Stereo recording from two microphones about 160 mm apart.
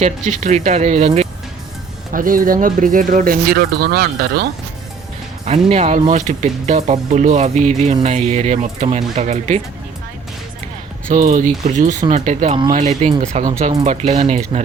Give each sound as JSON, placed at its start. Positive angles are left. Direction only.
{"t": 0.0, "sound": "speech", "side_deg": -50}
{"t": 2.1, "sound": "speech", "side_deg": -60}
{"t": 5.5, "sound": "speech", "side_deg": -45}
{"t": 11.1, "sound": "speech", "side_deg": -50}